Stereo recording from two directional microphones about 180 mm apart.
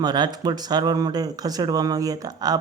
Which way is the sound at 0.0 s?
25° right (ahead or behind).